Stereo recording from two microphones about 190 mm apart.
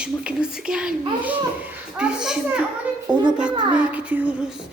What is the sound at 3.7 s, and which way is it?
Female singing, 5° right (ahead or behind).